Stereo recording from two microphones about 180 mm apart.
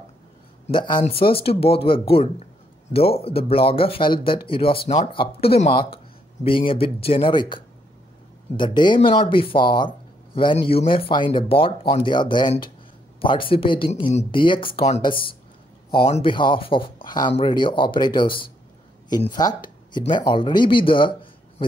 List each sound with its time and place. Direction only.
0.7 s speech: 25° left (ahead or behind)